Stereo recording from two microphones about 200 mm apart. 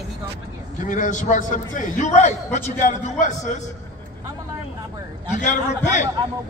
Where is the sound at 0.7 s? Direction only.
40° left (ahead or behind).